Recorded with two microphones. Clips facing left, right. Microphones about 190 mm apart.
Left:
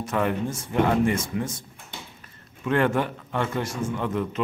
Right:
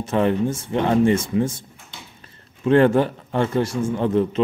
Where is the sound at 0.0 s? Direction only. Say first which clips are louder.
Right 6 dB; 30° right (ahead or behind).